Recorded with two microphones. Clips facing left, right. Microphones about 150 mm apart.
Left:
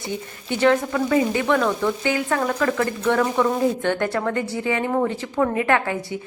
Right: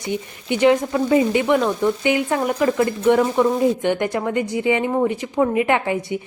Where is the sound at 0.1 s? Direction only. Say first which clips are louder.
Right 5 dB; 15° right (ahead or behind).